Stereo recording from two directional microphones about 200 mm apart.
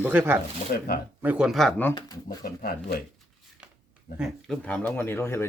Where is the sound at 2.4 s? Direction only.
50° left (ahead or behind).